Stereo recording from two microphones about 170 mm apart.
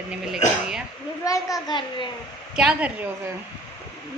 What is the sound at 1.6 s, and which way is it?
Speech, 30° left (ahead or behind).